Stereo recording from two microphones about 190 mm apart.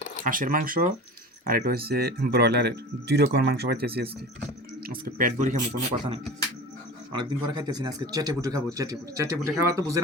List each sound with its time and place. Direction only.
0.3 s a man's voice: 45° right (ahead or behind)
7.1 s a man's voice: 25° right (ahead or behind)